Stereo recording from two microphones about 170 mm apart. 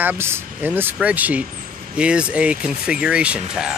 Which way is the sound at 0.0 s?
10° right (ahead or behind).